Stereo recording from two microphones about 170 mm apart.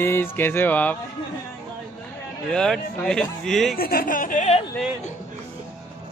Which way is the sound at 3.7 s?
60° left (ahead or behind).